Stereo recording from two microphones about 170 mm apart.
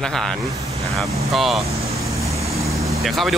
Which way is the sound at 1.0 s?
35° right (ahead or behind).